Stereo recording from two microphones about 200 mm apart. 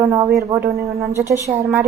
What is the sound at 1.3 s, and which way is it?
Speech, 15° right (ahead or behind).